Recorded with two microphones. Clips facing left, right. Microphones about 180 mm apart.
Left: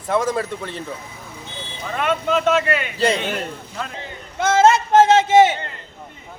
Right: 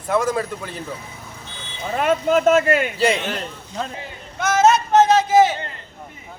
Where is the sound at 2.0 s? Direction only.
40° right (ahead or behind).